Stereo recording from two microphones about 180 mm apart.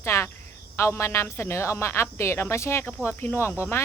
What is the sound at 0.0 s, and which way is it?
Cricket, 15° left (ahead or behind).